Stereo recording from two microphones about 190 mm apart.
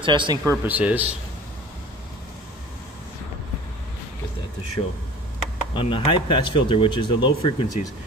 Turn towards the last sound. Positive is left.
turn(degrees=25)  # may be behind; listen again after turning